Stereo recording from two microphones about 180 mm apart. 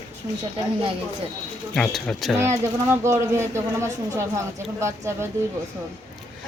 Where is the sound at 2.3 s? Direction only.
15° right (ahead or behind).